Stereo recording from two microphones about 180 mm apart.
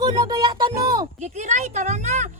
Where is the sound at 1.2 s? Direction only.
40° right (ahead or behind).